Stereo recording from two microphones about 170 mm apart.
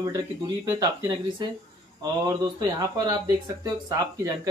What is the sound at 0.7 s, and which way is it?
Speech, 20° right (ahead or behind).